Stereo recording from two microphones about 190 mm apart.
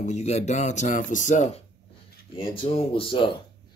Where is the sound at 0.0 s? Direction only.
35° left (ahead or behind).